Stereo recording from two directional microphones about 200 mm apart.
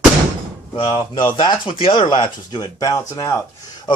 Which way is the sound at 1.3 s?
25° left (ahead or behind).